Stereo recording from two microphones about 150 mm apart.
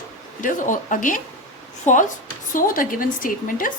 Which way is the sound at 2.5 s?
65° left (ahead or behind).